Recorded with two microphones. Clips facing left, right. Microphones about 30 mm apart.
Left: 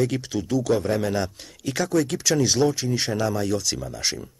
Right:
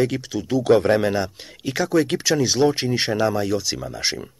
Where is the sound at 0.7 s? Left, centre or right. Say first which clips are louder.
Right 8 dB; right.